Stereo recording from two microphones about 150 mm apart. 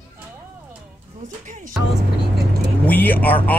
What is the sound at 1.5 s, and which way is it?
Music, 55° right (ahead or behind).